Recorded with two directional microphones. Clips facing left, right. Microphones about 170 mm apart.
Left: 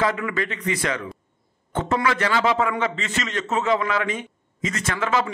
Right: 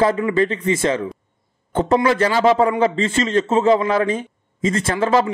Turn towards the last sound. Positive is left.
turn(degrees=-35)  # may be behind; listen again after turning